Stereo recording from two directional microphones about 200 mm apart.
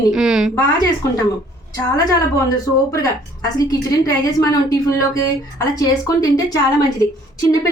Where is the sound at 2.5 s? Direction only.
15° left (ahead or behind).